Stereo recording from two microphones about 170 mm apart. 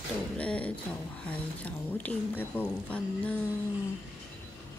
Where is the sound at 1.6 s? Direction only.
10° left (ahead or behind).